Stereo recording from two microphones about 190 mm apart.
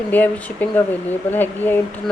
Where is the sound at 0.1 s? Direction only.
10° left (ahead or behind).